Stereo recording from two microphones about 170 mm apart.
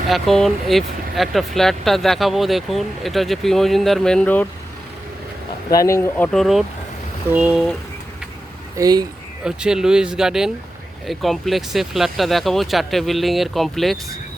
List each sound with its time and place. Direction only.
0.1 s speech: centre (ahead or behind)
5.7 s speech: 15° left (ahead or behind); by 7.7 s 5° right (ahead or behind)
8.7 s speech: 20° right (ahead or behind)
9.4 s speech: 5° right (ahead or behind)